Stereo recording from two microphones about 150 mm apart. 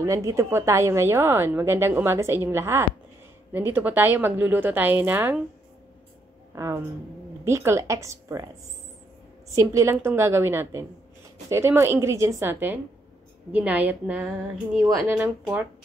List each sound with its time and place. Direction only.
0.0 s a woman's voice: 20° right (ahead or behind)
6.5 s a woman's voice: 20° right (ahead or behind)
9.6 s a woman's voice: 20° right (ahead or behind)